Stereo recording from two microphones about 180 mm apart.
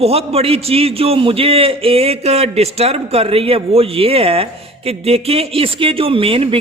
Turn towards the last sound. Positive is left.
turn(degrees=-30)  # may be behind; listen again after turning